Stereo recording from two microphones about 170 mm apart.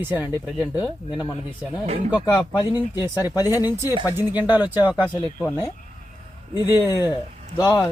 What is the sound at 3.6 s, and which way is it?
Speech, 15° right (ahead or behind).